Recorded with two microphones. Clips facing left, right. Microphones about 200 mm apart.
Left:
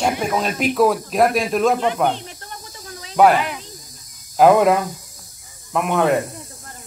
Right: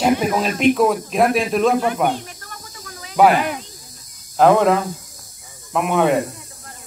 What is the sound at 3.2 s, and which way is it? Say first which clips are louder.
Speech: even; centre (ahead or behind).